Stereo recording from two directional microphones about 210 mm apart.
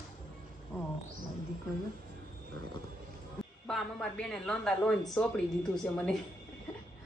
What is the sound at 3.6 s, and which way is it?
A man's voice, 5° left (ahead or behind).